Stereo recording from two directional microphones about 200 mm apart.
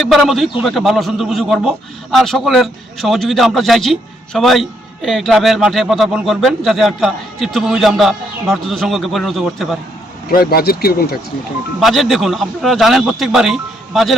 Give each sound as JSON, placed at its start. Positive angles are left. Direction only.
{"t": 0.0, "sound": "speech", "side_deg": 0}
{"t": 10.2, "sound": "speech", "side_deg": 50}
{"t": 11.8, "sound": "speech", "side_deg": 0}